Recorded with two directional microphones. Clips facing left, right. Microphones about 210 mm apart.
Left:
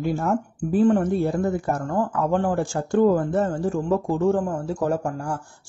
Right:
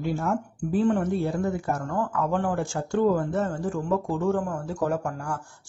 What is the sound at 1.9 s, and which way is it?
Speech, 35° left (ahead or behind).